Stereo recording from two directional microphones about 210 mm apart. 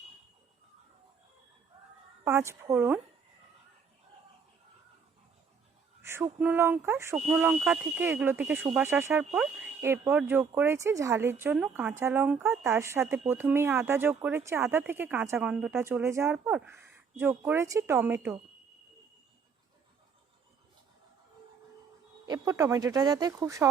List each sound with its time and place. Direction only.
2.2 s speech: 15° right (ahead or behind)
6.0 s speech: 10° right (ahead or behind)
22.3 s speech: 15° right (ahead or behind)